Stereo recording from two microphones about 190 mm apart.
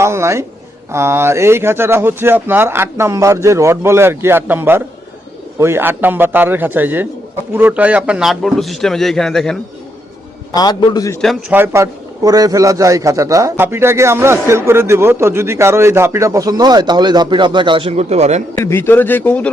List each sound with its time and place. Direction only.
0.0 s a man's voice: 15° right (ahead or behind); by 9.6 s centre (ahead or behind)
10.5 s a man's voice: 20° left (ahead or behind)
11.2 s a man's voice: centre (ahead or behind)
11.5 s a man's voice: 15° right (ahead or behind); by 18.4 s 35° right (ahead or behind)
18.5 s a man's voice: 15° left (ahead or behind)